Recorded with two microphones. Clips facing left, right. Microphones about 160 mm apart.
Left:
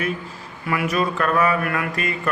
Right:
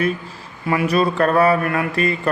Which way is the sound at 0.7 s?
30° right (ahead or behind).